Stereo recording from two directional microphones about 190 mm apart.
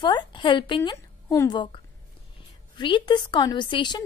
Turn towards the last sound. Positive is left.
turn(degrees=25)  # may be behind; listen again after turning